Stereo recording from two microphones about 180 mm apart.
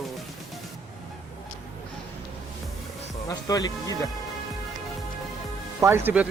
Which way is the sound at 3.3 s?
20° left (ahead or behind).